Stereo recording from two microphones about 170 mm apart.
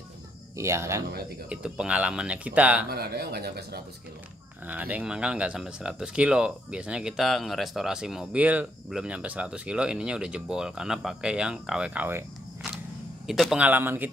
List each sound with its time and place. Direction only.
0.6 s speech: 15° right (ahead or behind)
1.5 s speech: 5° right (ahead or behind)
2.9 s speech: 65° right (ahead or behind)
4.6 s speech: 10° right (ahead or behind)
13.3 s speech: centre (ahead or behind)